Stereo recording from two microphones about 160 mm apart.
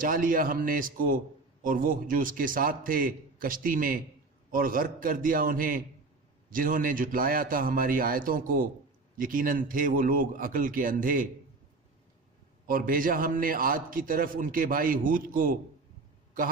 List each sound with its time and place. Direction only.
0.0 s a man's voice: 60° right (ahead or behind)
12.6 s a man's voice: 60° right (ahead or behind)